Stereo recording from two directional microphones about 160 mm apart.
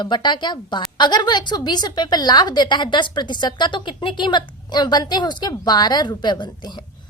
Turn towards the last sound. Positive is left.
turn(degrees=25)  # may be behind; listen again after turning